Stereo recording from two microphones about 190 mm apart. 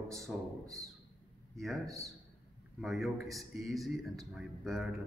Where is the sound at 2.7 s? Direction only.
Centre (ahead or behind).